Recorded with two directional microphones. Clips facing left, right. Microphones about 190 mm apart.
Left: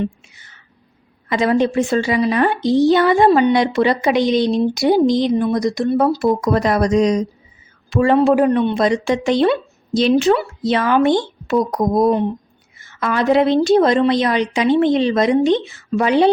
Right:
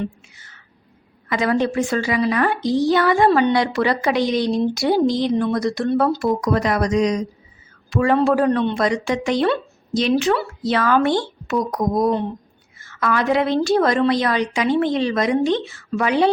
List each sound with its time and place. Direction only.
1.3 s a woman's voice: 25° left (ahead or behind)
6.1 s a man's voice: 25° left (ahead or behind)
10.3 s a woman's voice: 20° left (ahead or behind)
11.4 s speech: 30° left (ahead or behind)
12.8 s a sound: 20° left (ahead or behind)
13.2 s a woman's voice: 25° left (ahead or behind)